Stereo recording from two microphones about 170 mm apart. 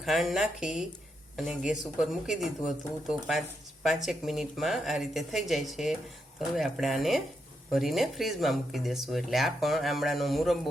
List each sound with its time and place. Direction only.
0.0 s speech: centre (ahead or behind)